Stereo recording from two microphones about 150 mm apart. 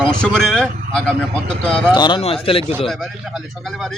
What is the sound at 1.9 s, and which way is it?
Speech, 30° left (ahead or behind).